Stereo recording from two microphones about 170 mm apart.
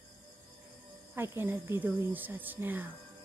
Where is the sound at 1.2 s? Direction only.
15° right (ahead or behind).